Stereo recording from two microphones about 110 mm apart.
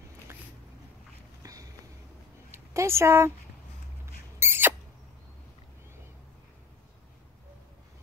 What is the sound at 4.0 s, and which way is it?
Mouse, 20° right (ahead or behind).